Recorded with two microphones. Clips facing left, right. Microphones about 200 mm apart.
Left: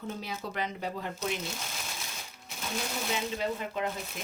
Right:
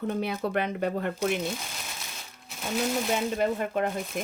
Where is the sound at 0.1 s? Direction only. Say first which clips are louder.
Right 10 dB; 60° right (ahead or behind).